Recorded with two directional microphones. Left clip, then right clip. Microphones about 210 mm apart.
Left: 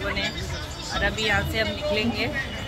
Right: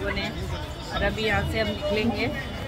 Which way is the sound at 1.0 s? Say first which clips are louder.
Left 1 dB; 5° right (ahead or behind).